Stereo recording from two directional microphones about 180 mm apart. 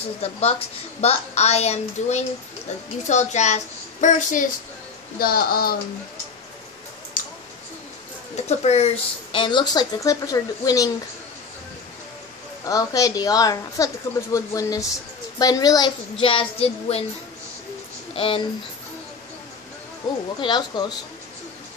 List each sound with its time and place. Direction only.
0.2 s a woman's voice: 35° left (ahead or behind)
5.2 s speech: 55° left (ahead or behind)
8.5 s a woman's voice: 35° left (ahead or behind); by 10.9 s 20° left (ahead or behind)
12.6 s a woman's voice: 20° left (ahead or behind)
18.1 s a woman's voice: 30° left (ahead or behind)
20.3 s a woman's voice: 25° left (ahead or behind)